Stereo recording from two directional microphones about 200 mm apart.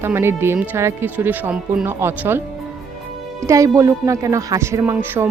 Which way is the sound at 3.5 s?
15° right (ahead or behind).